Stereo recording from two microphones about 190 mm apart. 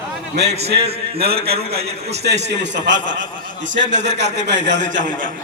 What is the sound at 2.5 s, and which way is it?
A man's voice, 70° right (ahead or behind).